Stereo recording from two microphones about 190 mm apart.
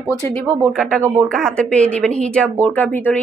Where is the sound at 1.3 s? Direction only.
5° left (ahead or behind).